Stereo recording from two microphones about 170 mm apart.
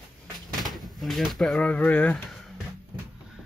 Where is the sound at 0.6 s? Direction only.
Centre (ahead or behind).